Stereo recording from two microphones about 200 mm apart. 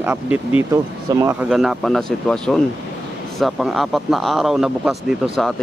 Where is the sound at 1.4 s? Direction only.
Centre (ahead or behind).